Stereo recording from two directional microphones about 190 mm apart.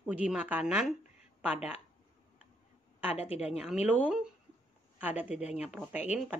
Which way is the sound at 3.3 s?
35° left (ahead or behind).